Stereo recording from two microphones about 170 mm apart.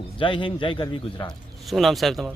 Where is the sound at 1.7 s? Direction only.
Centre (ahead or behind).